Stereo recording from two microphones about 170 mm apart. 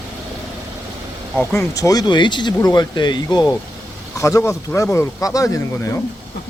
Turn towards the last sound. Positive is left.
turn(degrees=20)  # may be behind; listen again after turning